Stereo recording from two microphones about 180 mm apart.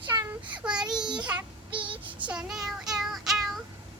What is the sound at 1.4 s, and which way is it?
Child singing, 25° right (ahead or behind).